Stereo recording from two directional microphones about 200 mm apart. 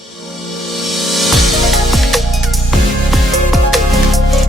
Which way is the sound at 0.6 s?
Centre (ahead or behind).